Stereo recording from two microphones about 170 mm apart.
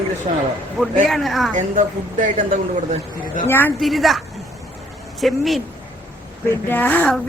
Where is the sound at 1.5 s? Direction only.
50° right (ahead or behind).